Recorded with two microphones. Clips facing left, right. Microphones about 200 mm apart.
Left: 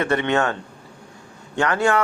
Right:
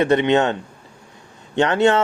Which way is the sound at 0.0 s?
20° right (ahead or behind).